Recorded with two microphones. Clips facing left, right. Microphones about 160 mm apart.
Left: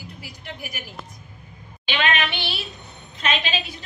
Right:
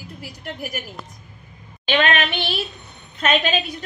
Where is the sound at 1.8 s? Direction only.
45° right (ahead or behind).